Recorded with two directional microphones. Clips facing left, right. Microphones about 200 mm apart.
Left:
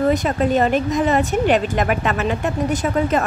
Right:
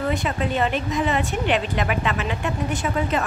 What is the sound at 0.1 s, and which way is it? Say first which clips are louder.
A woman's voice: left 6 dB; 40° left (ahead or behind).